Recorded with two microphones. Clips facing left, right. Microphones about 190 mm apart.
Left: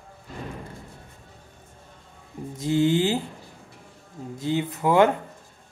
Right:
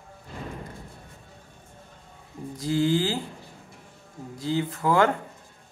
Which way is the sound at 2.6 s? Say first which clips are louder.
Left 2 dB; 20° left (ahead or behind).